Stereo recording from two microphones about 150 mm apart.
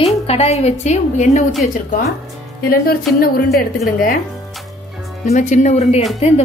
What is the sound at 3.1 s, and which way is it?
Speech, 80° left.